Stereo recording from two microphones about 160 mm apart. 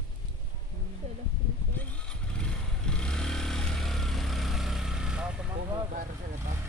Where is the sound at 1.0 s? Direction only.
40° right (ahead or behind).